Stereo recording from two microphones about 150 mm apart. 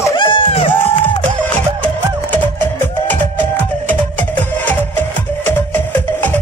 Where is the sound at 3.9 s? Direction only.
10° left (ahead or behind).